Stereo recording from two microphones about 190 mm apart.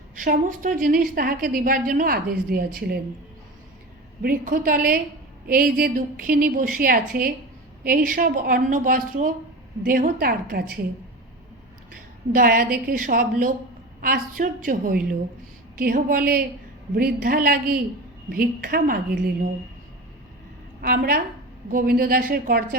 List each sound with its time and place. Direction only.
0.2 s a woman's voice: 45° right (ahead or behind)
4.2 s a woman's voice: 50° right (ahead or behind)
12.3 s a woman's voice: 50° right (ahead or behind)
20.8 s a woman's voice: 50° right (ahead or behind)